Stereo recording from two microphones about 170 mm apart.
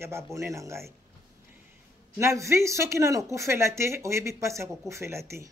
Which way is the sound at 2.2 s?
15° right (ahead or behind).